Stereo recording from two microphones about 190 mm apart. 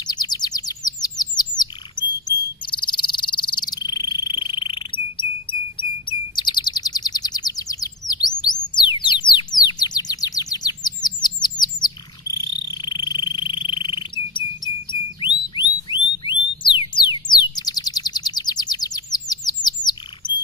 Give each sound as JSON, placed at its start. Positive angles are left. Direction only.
{"t": 0.0, "sound": "bird", "side_deg": 20}
{"t": 11.6, "sound": "bird", "side_deg": -10}
{"t": 12.6, "sound": "insect", "side_deg": 20}
{"t": 14.9, "sound": "a sound", "side_deg": 25}